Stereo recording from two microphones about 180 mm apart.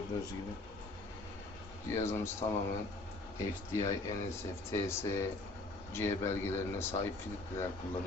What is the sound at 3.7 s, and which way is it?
Speech, 15° left (ahead or behind).